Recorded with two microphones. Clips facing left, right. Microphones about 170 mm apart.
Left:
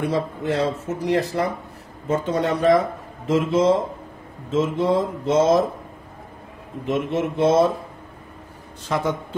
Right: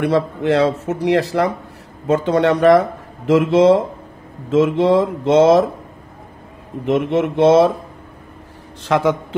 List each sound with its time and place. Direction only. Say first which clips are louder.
0.0 s speech: right 6 dB; 75° right (ahead or behind)
6.9 s speech: right 6 dB; 65° right (ahead or behind)
8.8 s a man's voice: right 7 dB; 80° right